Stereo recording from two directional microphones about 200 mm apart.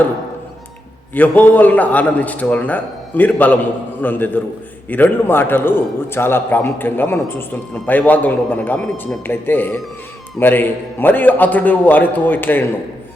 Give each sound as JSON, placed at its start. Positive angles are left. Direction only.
{"t": 1.1, "sound": "a man's voice", "side_deg": 10}